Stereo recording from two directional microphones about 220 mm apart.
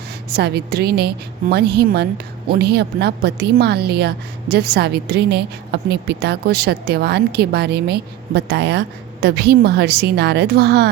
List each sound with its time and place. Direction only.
0.3 s a woman's voice: 50° right (ahead or behind)